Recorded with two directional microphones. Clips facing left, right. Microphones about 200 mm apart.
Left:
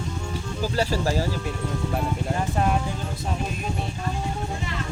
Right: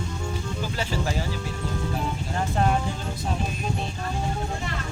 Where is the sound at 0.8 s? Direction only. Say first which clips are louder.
Left 6 dB; 40° left (ahead or behind).